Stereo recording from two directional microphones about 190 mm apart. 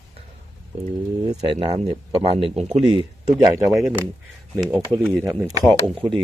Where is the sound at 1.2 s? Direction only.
20° right (ahead or behind); by 2.8 s 35° right (ahead or behind).